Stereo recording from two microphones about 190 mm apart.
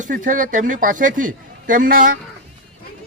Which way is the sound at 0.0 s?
45° right (ahead or behind).